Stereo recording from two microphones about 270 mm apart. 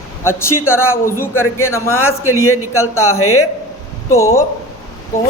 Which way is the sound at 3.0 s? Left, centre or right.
Left.